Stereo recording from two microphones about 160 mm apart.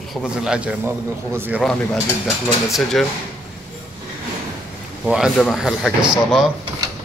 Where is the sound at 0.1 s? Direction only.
5° right (ahead or behind).